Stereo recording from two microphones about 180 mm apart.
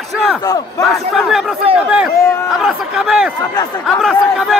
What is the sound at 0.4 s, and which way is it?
Speech, 20° left (ahead or behind).